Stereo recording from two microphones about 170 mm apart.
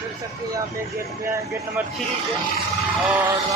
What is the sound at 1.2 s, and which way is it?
Speech, 20° right (ahead or behind).